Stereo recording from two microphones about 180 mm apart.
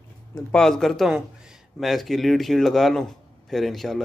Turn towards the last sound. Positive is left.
turn(degrees=0)  # may be behind; listen again after turning